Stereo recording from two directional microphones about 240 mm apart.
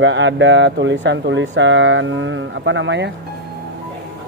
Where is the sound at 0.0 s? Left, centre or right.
Right.